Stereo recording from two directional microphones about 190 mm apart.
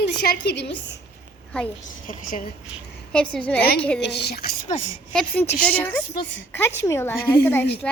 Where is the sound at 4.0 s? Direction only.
60° left (ahead or behind).